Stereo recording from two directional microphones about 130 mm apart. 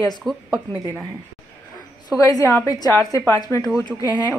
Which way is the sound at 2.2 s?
25° left (ahead or behind).